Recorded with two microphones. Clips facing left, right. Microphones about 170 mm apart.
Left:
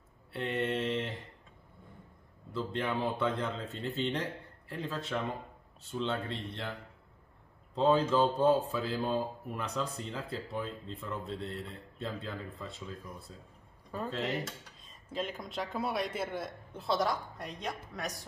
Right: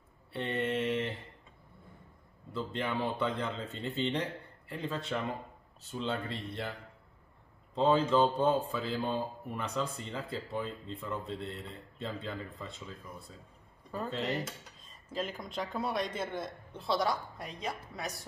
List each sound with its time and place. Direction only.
0.3 s mantra: centre (ahead or behind)
2.5 s a man's voice: centre (ahead or behind)
7.7 s a man's voice: 5° left (ahead or behind)
13.9 s a man's voice: centre (ahead or behind)